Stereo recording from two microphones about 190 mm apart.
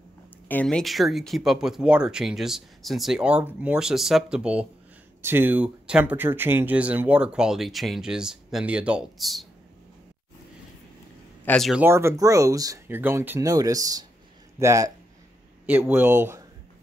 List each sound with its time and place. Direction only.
0.5 s speech: 5° left (ahead or behind)
11.4 s speech: centre (ahead or behind)
11.8 s speech: 15° right (ahead or behind)